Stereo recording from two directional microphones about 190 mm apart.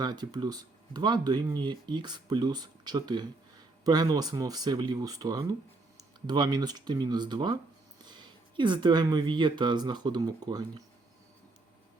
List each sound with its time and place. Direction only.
0.0 s speech: 20° right (ahead or behind)